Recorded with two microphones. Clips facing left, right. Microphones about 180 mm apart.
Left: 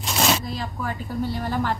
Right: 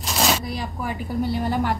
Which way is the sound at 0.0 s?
Centre (ahead or behind).